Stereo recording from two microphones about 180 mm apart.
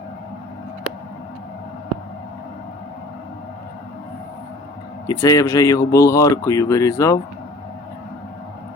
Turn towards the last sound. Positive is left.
turn(degrees=15)  # may be behind; listen again after turning